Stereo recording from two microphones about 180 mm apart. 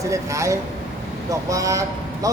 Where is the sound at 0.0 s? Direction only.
15° right (ahead or behind).